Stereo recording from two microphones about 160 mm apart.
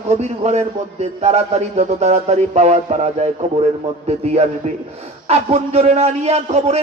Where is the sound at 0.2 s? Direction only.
45° right (ahead or behind).